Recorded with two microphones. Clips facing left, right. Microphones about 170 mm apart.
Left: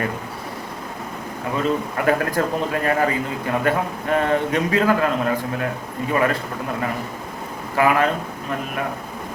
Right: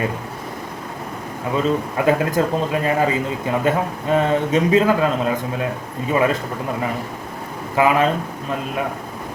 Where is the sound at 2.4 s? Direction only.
20° right (ahead or behind).